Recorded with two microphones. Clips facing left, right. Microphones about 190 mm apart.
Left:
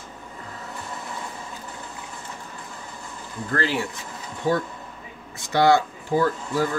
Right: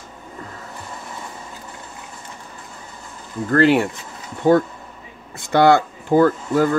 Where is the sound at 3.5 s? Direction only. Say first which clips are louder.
Right 11 dB; 60° right (ahead or behind).